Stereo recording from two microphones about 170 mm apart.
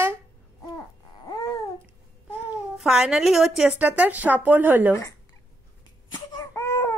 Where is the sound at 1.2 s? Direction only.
25° left (ahead or behind).